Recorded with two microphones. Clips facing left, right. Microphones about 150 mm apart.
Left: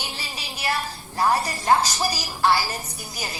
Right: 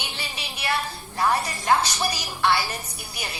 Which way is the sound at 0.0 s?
35° left (ahead or behind).